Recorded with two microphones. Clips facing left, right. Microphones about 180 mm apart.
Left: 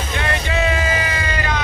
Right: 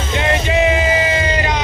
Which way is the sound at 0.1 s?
20° right (ahead or behind).